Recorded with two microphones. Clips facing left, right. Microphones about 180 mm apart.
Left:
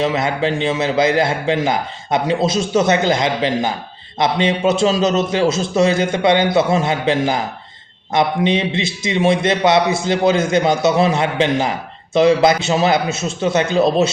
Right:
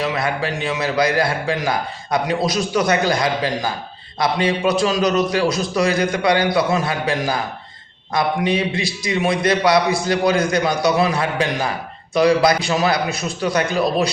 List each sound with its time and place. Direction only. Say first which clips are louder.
0.0 s a man's voice: left 4 dB; 25° left (ahead or behind)